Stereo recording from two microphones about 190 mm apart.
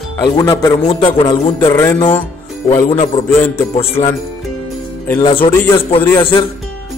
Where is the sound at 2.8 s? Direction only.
35° left (ahead or behind).